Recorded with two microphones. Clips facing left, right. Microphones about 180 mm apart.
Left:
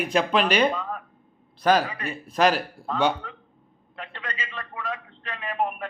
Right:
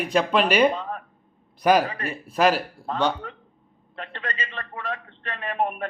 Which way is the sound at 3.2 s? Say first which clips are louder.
Right 3 dB; 50° right (ahead or behind).